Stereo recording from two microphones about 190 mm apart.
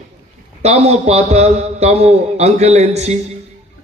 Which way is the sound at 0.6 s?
35° right (ahead or behind).